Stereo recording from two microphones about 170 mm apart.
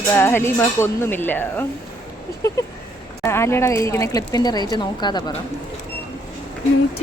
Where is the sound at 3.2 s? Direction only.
15° left (ahead or behind).